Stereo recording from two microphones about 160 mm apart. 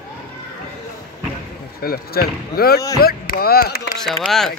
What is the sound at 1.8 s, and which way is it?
Speech, 70° left (ahead or behind).